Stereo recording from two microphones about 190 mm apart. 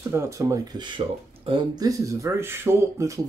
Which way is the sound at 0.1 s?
15° right (ahead or behind).